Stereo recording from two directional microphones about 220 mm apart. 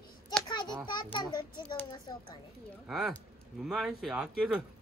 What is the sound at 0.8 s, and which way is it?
A child's voice, 20° left (ahead or behind).